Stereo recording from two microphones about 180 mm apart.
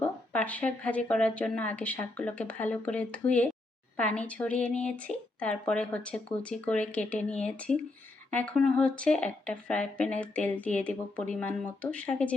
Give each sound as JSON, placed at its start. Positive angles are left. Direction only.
{"t": 0.0, "sound": "speech", "side_deg": 10}